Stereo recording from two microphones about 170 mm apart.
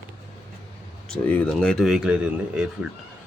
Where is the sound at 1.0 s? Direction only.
5° left (ahead or behind).